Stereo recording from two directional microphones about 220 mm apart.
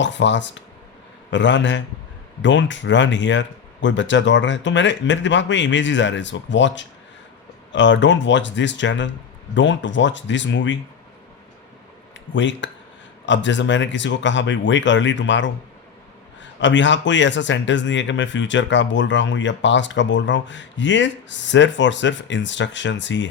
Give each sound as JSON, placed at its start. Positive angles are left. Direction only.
{"t": 0.0, "sound": "speech", "side_deg": 55}
{"t": 12.3, "sound": "speech", "side_deg": 55}